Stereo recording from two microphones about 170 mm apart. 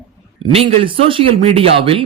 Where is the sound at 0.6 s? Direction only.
35° right (ahead or behind).